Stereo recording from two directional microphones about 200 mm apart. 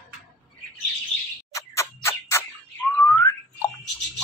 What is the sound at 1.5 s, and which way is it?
Bird, 15° left (ahead or behind).